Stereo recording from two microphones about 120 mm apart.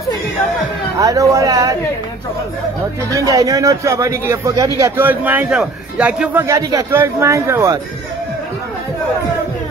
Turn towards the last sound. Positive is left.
turn(degrees=-25)  # may be behind; listen again after turning